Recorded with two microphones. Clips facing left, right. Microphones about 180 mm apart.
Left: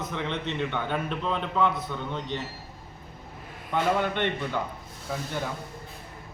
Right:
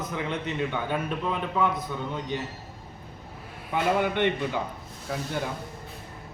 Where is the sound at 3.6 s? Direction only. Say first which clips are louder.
Right 1 dB; 5° right (ahead or behind).